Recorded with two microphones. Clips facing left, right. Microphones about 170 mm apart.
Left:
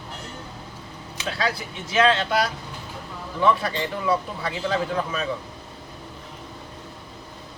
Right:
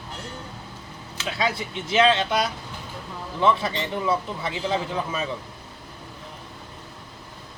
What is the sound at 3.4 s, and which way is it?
A man's voice, 20° right (ahead or behind).